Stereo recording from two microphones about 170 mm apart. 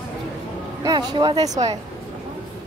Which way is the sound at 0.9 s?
25° right (ahead or behind).